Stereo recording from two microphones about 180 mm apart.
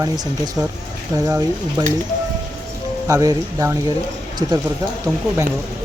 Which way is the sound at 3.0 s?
20° right (ahead or behind).